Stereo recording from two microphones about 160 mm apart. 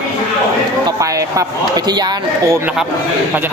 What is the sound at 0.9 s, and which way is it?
Speech, 20° right (ahead or behind).